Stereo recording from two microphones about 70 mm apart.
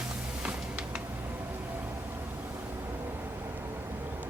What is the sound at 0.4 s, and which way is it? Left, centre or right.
Music, centre.